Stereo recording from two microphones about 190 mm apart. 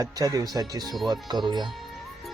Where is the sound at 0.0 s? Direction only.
20° right (ahead or behind).